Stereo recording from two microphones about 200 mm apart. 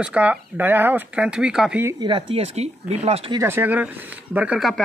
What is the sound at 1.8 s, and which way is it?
Speech, 25° right (ahead or behind).